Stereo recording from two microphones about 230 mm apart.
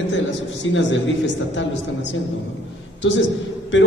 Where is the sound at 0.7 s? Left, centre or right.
Left.